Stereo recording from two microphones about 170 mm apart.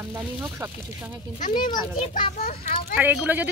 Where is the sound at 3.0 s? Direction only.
10° right (ahead or behind).